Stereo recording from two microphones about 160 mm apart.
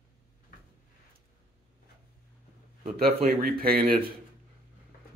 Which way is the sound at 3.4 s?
70° right (ahead or behind).